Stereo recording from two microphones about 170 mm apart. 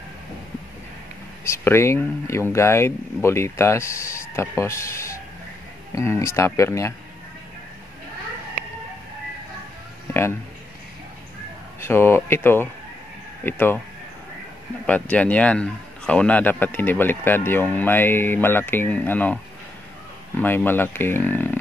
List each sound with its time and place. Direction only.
1.4 s a man's voice: 15° left (ahead or behind)
11.8 s a man's voice: 15° left (ahead or behind)
14.9 s a man's voice: 10° left (ahead or behind)